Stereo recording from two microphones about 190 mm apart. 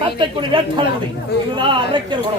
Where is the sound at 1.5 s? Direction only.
25° right (ahead or behind).